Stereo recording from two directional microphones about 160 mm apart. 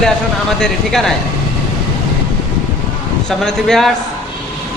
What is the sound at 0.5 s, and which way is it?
Speech, 5° left (ahead or behind).